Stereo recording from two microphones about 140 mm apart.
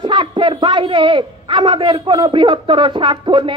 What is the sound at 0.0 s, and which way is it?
A man's voice, 35° right (ahead or behind).